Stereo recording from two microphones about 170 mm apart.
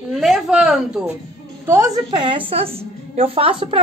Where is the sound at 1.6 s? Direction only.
15° right (ahead or behind); by 3.8 s 30° right (ahead or behind).